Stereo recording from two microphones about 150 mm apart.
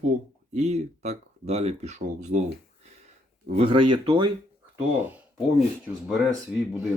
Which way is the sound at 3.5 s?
40° right (ahead or behind).